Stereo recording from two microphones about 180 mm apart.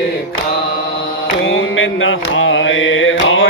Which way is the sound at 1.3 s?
90° left.